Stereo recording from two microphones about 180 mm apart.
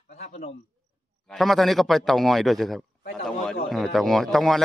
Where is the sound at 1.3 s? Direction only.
Centre (ahead or behind).